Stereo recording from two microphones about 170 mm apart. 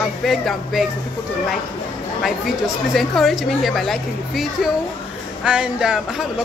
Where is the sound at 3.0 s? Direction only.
Centre (ahead or behind).